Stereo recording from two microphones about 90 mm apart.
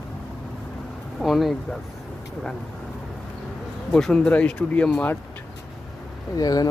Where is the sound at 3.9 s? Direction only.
5° left (ahead or behind).